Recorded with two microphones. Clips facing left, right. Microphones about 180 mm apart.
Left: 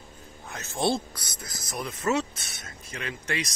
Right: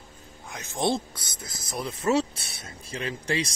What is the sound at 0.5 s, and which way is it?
Speech, 15° right (ahead or behind).